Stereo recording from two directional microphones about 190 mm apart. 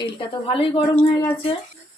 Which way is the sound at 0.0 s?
25° left (ahead or behind).